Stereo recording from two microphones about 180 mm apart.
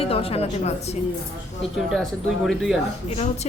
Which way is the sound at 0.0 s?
30° left (ahead or behind).